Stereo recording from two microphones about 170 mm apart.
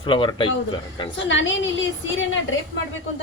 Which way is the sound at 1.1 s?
90° left.